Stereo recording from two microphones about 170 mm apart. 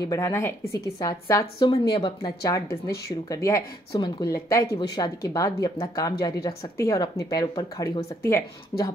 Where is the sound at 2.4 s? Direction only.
20° left (ahead or behind).